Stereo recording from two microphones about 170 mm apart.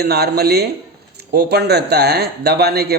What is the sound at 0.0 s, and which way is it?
A man's voice, 70° right (ahead or behind).